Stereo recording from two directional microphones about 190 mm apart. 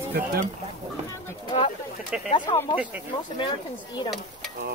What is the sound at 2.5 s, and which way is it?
Speech, 25° left (ahead or behind).